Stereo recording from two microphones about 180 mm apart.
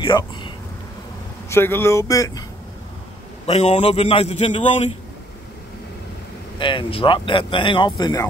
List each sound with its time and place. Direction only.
0.0 s speech: 25° left (ahead or behind)
1.5 s speech: 10° left (ahead or behind)
3.4 s a man's voice: 35° left (ahead or behind)
6.6 s speech: 30° left (ahead or behind)